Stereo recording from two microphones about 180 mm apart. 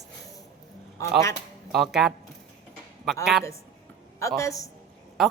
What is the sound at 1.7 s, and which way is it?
Speech, centre (ahead or behind).